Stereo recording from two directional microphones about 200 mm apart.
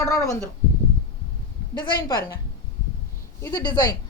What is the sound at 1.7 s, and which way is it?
Speech, 20° left (ahead or behind).